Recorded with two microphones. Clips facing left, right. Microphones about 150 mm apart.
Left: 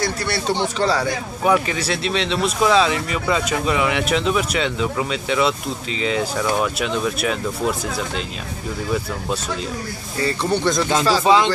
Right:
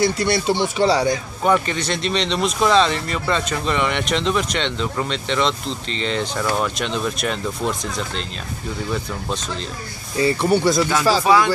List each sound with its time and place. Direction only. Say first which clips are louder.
0.0 s speech: right 4 dB; 15° right (ahead or behind)
1.4 s speech: left 1 dB; 5° left (ahead or behind)
10.1 s speech: right 4 dB; 15° right (ahead or behind)
11.2 s speech: left 1 dB; 20° left (ahead or behind)